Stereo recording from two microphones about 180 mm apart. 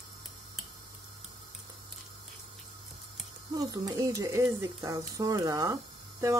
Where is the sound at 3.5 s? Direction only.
20° right (ahead or behind).